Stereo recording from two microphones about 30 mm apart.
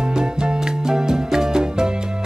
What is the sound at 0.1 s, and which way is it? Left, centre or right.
Music, right.